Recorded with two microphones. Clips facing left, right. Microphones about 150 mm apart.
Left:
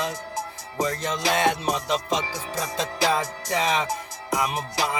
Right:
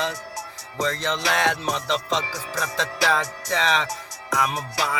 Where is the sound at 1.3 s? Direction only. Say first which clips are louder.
Left 2 dB; 20° left (ahead or behind).